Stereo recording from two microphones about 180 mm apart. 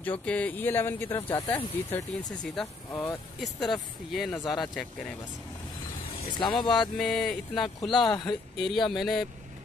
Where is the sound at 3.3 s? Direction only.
Centre (ahead or behind).